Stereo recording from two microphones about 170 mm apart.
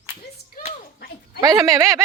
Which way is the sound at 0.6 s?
60° left (ahead or behind).